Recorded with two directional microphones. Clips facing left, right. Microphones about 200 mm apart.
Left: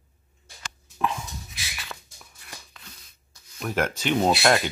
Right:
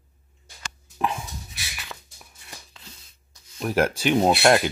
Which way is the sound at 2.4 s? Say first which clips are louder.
Even; 25° right (ahead or behind).